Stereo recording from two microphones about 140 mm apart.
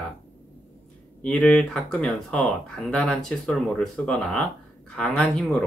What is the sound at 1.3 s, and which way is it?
Speech, 5° left (ahead or behind).